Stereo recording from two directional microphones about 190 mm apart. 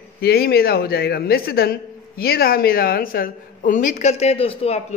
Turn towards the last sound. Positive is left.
turn(degrees=30)  # may be behind; listen again after turning